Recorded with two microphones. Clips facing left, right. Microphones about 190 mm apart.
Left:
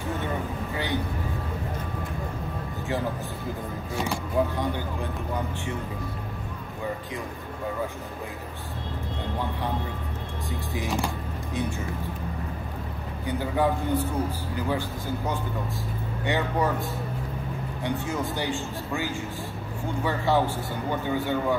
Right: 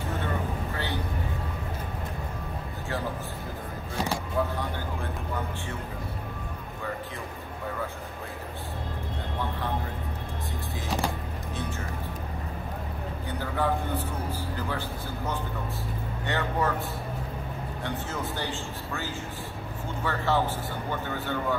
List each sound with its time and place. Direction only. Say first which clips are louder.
4.4 s a man's voice: left 4 dB; 15° left (ahead or behind)
13.4 s a man's voice: left 3 dB; 15° left (ahead or behind)
17.8 s a man's voice: left 5 dB; 15° left (ahead or behind)